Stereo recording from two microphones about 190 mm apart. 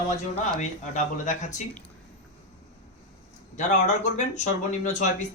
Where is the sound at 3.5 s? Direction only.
40° left (ahead or behind).